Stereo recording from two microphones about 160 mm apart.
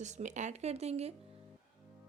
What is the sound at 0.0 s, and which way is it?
A woman's voice, 50° right (ahead or behind).